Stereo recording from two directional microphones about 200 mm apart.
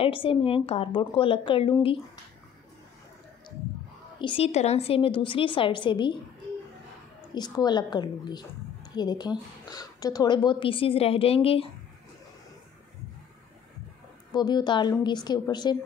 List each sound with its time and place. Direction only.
0.0 s a woman's voice: 25° left (ahead or behind)
4.2 s a woman's voice: 25° left (ahead or behind)
7.3 s a woman's voice: 20° left (ahead or behind)
14.3 s a woman's voice: 20° left (ahead or behind)